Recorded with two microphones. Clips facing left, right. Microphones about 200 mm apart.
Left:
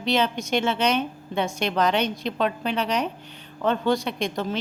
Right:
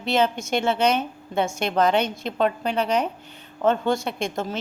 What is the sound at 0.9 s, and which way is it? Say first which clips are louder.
Speech: even; 5° right (ahead or behind).